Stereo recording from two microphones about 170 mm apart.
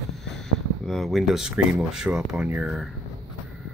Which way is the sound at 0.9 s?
Centre (ahead or behind).